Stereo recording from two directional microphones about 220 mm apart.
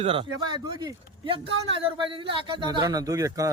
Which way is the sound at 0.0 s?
25° right (ahead or behind).